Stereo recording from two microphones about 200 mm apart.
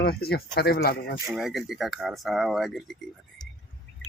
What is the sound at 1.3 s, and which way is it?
Speech, centre (ahead or behind).